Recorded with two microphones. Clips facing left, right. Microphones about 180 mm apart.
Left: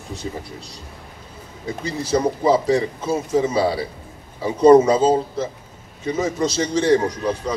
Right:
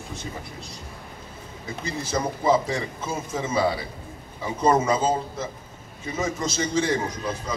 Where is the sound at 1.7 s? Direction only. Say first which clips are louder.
Left 7 dB; 35° left (ahead or behind).